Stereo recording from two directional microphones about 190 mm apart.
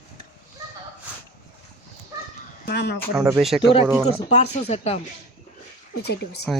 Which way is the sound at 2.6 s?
60° left (ahead or behind).